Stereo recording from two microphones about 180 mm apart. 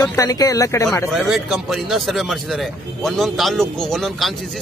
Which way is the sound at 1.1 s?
Centre (ahead or behind).